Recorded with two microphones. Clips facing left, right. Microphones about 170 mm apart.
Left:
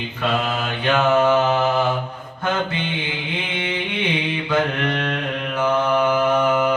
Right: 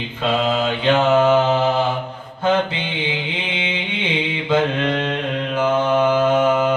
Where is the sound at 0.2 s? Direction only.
25° right (ahead or behind).